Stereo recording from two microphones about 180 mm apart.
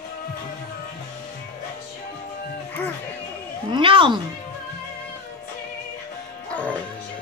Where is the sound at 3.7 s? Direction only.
30° right (ahead or behind).